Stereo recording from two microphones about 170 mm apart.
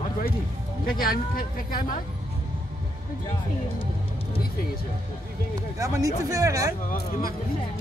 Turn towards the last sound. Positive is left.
turn(degrees=60)  # may be behind; listen again after turning